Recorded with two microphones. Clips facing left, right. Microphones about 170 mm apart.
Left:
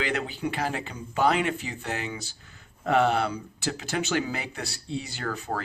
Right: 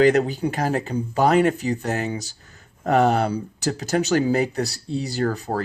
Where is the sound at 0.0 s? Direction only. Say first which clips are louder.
Right 12 dB; 40° right (ahead or behind).